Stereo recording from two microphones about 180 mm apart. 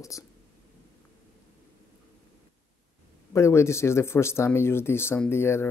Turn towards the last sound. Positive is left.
turn(degrees=15)  # may be behind; listen again after turning